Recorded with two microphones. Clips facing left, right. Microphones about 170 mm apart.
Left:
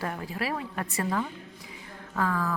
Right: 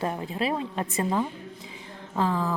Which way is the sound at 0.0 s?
20° right (ahead or behind).